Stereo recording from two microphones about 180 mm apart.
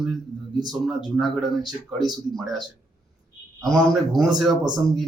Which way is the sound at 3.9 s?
Centre (ahead or behind).